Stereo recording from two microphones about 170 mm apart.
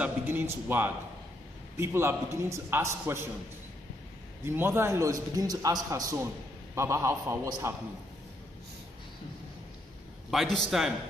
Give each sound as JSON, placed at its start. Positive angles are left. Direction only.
{"t": 0.0, "sound": "a man's voice", "side_deg": -10}
{"t": 4.5, "sound": "a man's voice", "side_deg": -15}
{"t": 10.3, "sound": "a man's voice", "side_deg": 0}